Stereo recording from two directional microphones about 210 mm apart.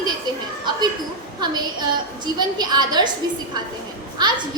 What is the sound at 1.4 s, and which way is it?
A woman's voice, 20° right (ahead or behind).